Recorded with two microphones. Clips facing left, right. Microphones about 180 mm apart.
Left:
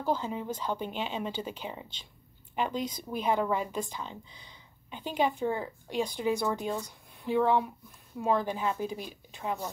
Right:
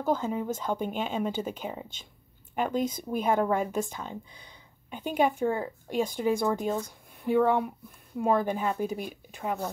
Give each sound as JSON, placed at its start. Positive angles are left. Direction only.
{"t": 0.0, "sound": "speech", "side_deg": -45}